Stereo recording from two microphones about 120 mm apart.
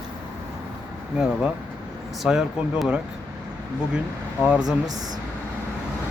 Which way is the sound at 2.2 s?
5° right (ahead or behind).